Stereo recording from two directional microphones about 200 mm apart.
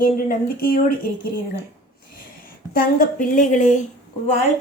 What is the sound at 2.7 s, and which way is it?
A woman's voice, 45° left (ahead or behind).